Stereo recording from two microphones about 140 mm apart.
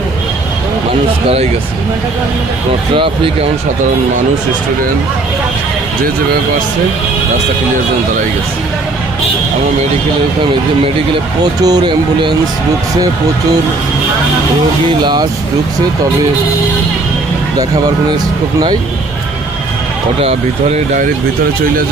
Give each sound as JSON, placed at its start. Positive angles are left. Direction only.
{"t": 2.9, "sound": "speech", "side_deg": -40}
{"t": 11.6, "sound": "speech", "side_deg": -30}
{"t": 15.0, "sound": "speech", "side_deg": -30}
{"t": 20.2, "sound": "speech", "side_deg": -60}